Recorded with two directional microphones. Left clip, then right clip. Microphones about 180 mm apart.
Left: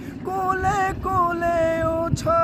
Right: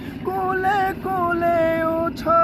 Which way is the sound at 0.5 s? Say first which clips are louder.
Right 2 dB; 25° left (ahead or behind).